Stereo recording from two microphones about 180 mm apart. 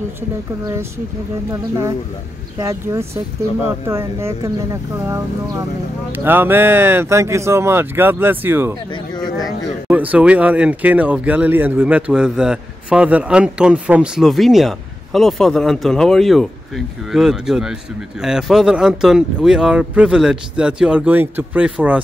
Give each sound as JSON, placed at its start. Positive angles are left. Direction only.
{"t": 1.5, "sound": "speech", "side_deg": -15}
{"t": 8.9, "sound": "a sound", "side_deg": 25}
{"t": 9.8, "sound": "speech", "side_deg": -10}